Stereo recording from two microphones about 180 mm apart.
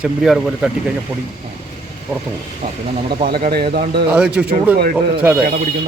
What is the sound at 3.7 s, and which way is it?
Speech, 60° right (ahead or behind).